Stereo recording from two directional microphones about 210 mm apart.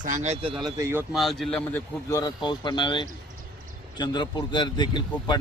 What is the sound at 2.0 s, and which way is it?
A man's voice, 15° left (ahead or behind).